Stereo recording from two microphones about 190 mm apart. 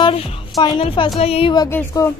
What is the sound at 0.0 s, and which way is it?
A woman's voice, 25° left (ahead or behind).